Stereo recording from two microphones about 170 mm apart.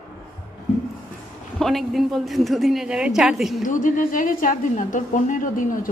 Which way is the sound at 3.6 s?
50° left (ahead or behind).